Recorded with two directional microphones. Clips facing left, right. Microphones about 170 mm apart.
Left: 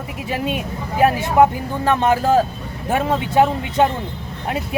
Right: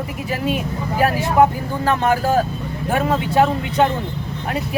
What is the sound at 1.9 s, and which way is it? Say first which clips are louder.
Speech: left 2 dB; 20° left (ahead or behind).